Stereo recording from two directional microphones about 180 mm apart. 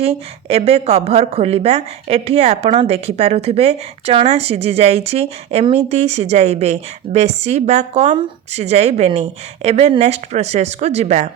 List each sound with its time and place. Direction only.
0.0 s a woman's voice: 35° right (ahead or behind)